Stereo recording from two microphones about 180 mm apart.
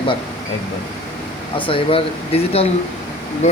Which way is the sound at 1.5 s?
30° left (ahead or behind).